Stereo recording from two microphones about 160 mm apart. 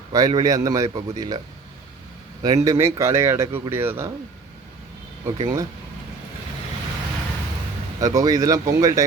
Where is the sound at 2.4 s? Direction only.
20° right (ahead or behind).